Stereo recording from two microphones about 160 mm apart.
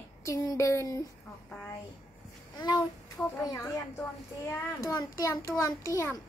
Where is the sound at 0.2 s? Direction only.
20° left (ahead or behind).